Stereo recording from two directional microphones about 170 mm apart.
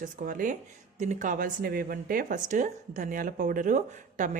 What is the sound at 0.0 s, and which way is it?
Speech, 55° right (ahead or behind).